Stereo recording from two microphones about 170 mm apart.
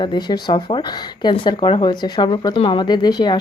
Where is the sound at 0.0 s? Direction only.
25° left (ahead or behind).